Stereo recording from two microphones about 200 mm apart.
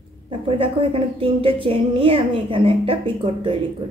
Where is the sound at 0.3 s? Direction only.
25° right (ahead or behind).